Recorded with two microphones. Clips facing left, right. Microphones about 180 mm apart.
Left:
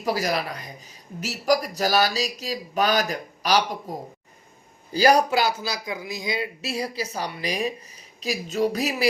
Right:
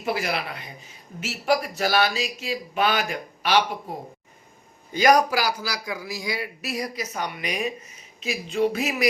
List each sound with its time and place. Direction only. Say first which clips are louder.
0.0 s a man's voice: left 2 dB; 40° left (ahead or behind)